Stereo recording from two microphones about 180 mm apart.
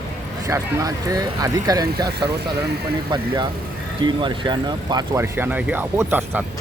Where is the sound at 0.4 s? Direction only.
20° right (ahead or behind).